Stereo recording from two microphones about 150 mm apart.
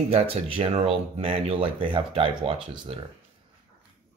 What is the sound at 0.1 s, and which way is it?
Speech, 40° right (ahead or behind).